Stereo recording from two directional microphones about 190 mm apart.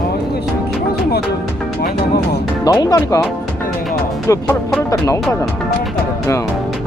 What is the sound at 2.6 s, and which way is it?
Speech, 20° left (ahead or behind).